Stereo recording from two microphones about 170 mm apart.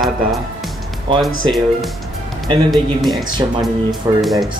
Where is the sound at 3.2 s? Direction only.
25° right (ahead or behind).